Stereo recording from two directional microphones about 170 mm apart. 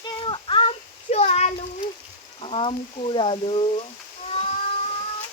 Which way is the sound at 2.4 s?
30° left (ahead or behind).